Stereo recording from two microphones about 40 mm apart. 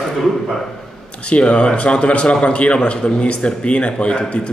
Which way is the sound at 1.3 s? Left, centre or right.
Left.